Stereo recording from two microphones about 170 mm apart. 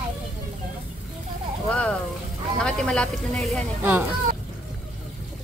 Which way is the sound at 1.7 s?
5° left (ahead or behind).